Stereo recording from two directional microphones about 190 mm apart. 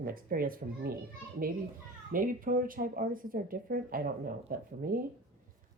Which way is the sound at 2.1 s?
45° right (ahead or behind).